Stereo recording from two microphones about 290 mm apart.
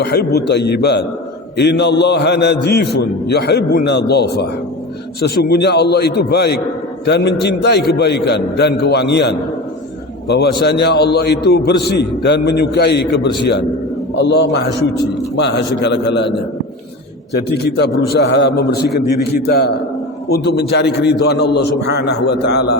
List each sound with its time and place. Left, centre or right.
0.1 s a man's voice: left
17.3 s a man's voice: left